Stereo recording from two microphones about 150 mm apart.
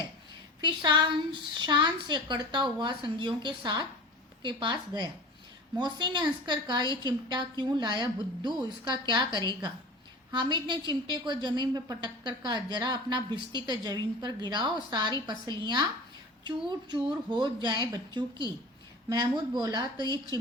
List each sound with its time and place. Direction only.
0.6 s a woman's voice: 30° right (ahead or behind)